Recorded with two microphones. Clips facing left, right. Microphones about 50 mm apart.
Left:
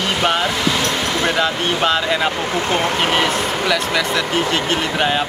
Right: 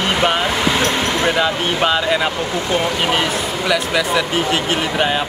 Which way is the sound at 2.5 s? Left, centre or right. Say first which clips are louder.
Even; left.